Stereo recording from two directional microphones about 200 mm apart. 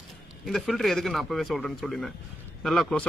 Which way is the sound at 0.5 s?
Centre (ahead or behind).